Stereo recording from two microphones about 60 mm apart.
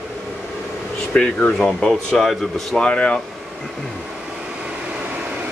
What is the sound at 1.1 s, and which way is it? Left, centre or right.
Speech, centre.